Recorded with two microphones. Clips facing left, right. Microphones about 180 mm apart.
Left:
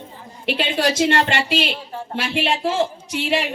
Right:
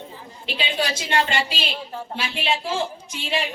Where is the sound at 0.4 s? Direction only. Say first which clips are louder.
Left 6 dB; 70° left (ahead or behind).